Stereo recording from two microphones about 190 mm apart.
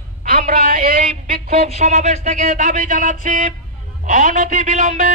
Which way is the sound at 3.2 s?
45° right (ahead or behind).